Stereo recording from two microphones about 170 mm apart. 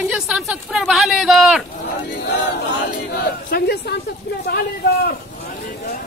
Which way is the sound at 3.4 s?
65° left (ahead or behind).